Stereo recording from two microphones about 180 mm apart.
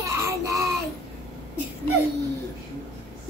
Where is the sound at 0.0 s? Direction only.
15° right (ahead or behind).